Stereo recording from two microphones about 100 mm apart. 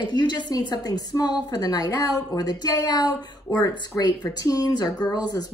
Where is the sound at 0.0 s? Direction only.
50° left (ahead or behind).